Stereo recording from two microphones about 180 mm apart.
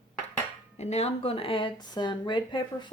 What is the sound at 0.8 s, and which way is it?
Speech, 35° left (ahead or behind).